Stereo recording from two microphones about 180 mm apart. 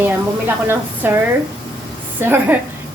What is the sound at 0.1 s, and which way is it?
A woman's voice, 10° right (ahead or behind).